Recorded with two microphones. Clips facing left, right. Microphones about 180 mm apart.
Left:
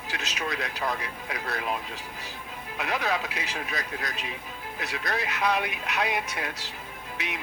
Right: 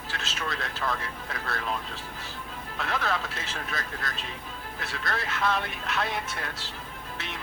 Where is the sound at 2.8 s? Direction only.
15° left (ahead or behind).